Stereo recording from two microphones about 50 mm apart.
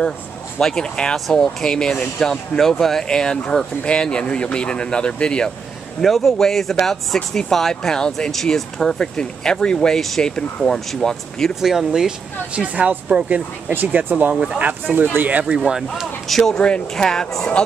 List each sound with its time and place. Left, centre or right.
0.6 s speech: centre
1.1 s speech: centre
5.9 s speech: centre
10.3 s speech: centre
11.6 s speech: centre
12.5 s speech: right
14.3 s speech: centre
15.2 s speech: right
15.5 s speech: centre
16.3 s speech: centre
16.5 s speech: centre